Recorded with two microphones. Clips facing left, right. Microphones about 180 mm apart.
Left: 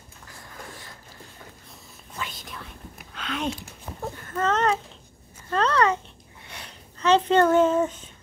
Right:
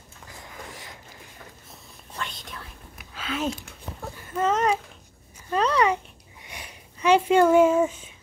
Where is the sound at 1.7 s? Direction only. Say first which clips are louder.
Right 1 dB; centre (ahead or behind).